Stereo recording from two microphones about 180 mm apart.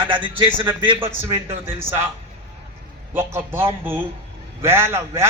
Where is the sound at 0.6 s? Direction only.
10° right (ahead or behind).